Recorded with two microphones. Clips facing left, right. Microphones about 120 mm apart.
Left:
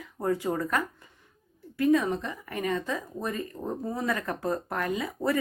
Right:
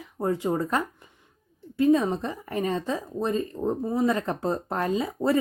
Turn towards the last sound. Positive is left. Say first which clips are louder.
# right 4 dB
turn(degrees=-25)  # may be behind; listen again after turning